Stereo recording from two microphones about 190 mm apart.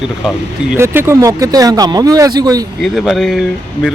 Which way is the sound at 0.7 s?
15° right (ahead or behind).